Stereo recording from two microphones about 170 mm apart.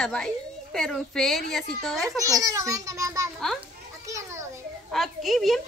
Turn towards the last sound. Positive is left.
turn(degrees=0)  # may be behind; listen again after turning